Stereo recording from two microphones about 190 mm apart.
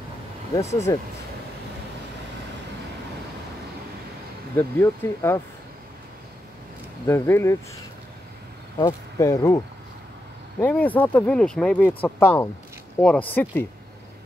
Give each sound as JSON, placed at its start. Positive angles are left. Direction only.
{"t": 0.6, "sound": "speech", "side_deg": 15}
{"t": 4.6, "sound": "speech", "side_deg": 10}
{"t": 7.1, "sound": "speech", "side_deg": 15}
{"t": 8.7, "sound": "speech", "side_deg": 15}
{"t": 10.6, "sound": "speech", "side_deg": 10}